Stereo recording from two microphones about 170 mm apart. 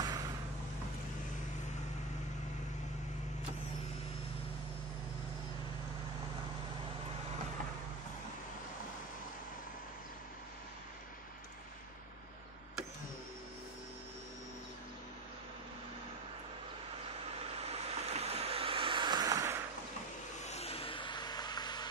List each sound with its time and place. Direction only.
0.0 s vehicle: 20° right (ahead or behind)
17.4 s vehicle: 40° right (ahead or behind); by 19.6 s 20° right (ahead or behind)
20.4 s a sound: 35° left (ahead or behind)